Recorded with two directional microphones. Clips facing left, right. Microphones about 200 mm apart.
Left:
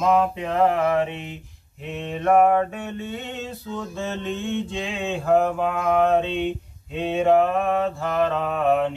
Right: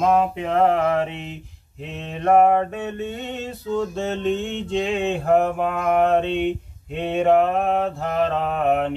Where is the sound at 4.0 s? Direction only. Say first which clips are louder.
Right 5 dB; 65° right (ahead or behind).